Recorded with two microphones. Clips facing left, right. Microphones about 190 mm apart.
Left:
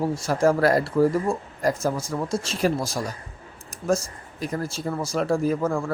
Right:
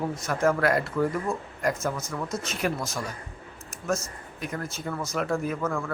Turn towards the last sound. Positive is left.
turn(degrees=30)  # may be behind; listen again after turning